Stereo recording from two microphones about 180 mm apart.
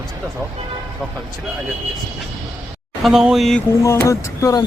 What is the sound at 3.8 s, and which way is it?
Speech, 15° left (ahead or behind).